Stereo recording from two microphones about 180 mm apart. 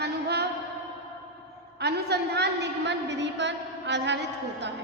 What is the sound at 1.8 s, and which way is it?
A woman's voice, 65° right (ahead or behind).